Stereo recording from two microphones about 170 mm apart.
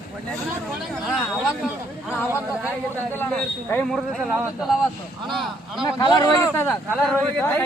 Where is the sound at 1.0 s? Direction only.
5° right (ahead or behind).